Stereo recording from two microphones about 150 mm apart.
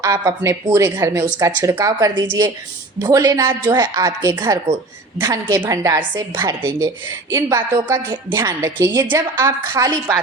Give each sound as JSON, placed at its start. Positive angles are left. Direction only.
{"t": 0.0, "sound": "a woman's voice", "side_deg": -20}